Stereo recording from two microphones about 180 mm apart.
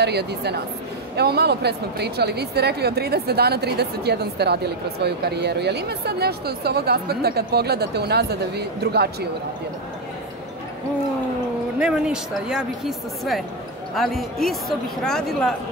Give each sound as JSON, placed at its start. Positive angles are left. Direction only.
{"t": 0.0, "sound": "a woman's voice", "side_deg": -65}
{"t": 11.8, "sound": "a woman's voice", "side_deg": -5}